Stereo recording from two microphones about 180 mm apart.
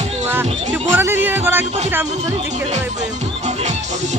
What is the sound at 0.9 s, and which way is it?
Music, 10° right (ahead or behind).